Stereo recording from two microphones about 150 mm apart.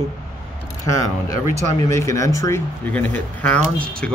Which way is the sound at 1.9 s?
20° left (ahead or behind).